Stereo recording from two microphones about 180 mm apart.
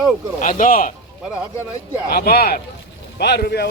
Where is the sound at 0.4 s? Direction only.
45° left (ahead or behind).